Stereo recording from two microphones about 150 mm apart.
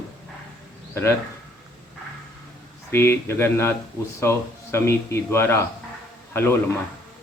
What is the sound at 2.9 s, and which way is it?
Speech, 15° left (ahead or behind).